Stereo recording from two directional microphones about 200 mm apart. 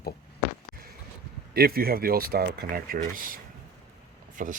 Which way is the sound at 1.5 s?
50° right (ahead or behind).